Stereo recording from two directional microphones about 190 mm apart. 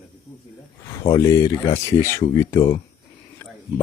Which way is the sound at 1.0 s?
15° left (ahead or behind).